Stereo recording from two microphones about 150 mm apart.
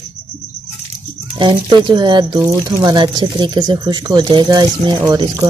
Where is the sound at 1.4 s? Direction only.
30° right (ahead or behind).